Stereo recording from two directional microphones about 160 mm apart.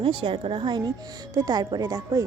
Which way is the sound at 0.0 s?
30° right (ahead or behind).